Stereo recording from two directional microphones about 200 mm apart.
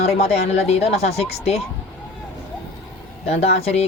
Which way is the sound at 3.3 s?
35° left (ahead or behind).